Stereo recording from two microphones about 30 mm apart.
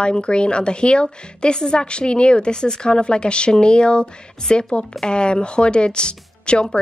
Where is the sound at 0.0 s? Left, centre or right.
Left.